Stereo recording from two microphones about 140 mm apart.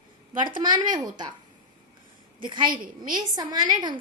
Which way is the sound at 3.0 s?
30° right (ahead or behind).